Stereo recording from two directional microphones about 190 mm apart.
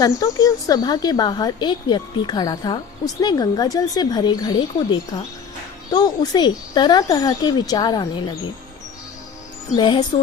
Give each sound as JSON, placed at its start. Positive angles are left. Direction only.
{"t": 0.0, "sound": "a woman's voice", "side_deg": 20}
{"t": 9.7, "sound": "a woman's voice", "side_deg": 25}